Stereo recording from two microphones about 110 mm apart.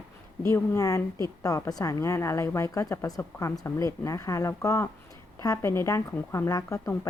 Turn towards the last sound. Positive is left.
turn(degrees=30)  # may be behind; listen again after turning